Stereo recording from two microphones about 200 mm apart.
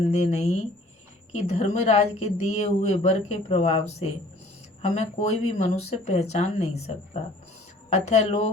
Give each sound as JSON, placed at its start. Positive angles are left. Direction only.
{"t": 0.1, "sound": "speech", "side_deg": 35}